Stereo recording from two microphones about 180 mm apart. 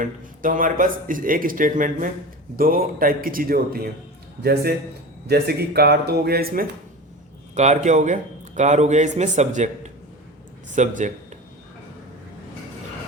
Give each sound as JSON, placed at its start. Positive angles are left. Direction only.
{"t": 0.0, "sound": "speech", "side_deg": -50}
{"t": 5.3, "sound": "speech", "side_deg": -60}
{"t": 7.5, "sound": "a man's voice", "side_deg": -40}